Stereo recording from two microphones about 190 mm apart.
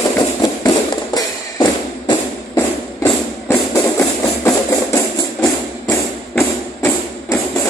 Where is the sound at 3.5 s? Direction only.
15° left (ahead or behind).